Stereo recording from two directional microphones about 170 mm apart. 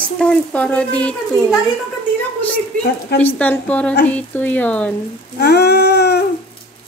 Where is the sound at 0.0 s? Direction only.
5° left (ahead or behind).